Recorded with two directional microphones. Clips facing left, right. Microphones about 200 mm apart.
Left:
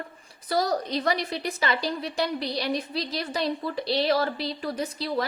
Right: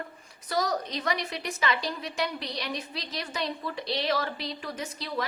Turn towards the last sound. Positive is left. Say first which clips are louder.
# left 5 dB
turn(degrees=35)  # may be behind; listen again after turning